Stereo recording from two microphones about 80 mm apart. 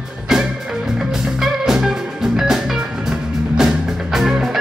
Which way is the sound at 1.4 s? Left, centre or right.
Centre.